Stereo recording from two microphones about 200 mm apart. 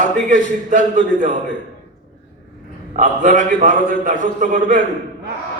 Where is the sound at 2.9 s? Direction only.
40° right (ahead or behind).